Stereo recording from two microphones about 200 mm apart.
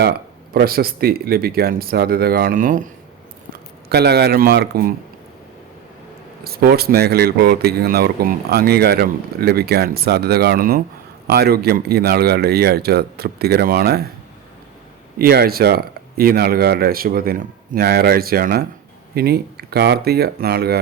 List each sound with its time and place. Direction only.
0.5 s speech: 50° right (ahead or behind)
3.5 s speech: 55° right (ahead or behind)
6.4 s speech: 50° right (ahead or behind)
15.2 s speech: 50° right (ahead or behind)